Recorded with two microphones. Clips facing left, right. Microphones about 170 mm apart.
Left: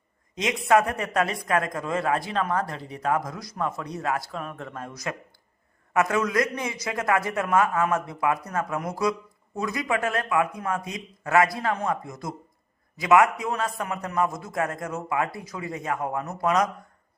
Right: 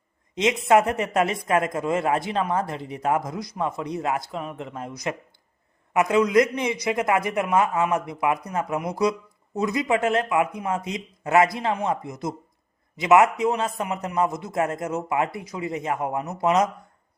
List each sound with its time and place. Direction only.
0.3 s a man's voice: 25° right (ahead or behind)